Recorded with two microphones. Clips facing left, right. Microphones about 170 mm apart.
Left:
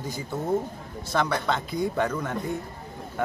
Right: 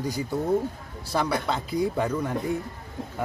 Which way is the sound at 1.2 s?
5° right (ahead or behind).